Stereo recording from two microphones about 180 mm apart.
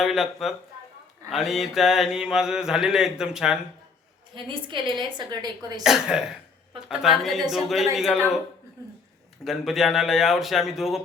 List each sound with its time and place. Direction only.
0.0 s speech: centre (ahead or behind)
1.3 s mantra: centre (ahead or behind)
4.4 s a woman's voice: 25° right (ahead or behind)
5.8 s mantra: 5° right (ahead or behind)
9.4 s mantra: centre (ahead or behind)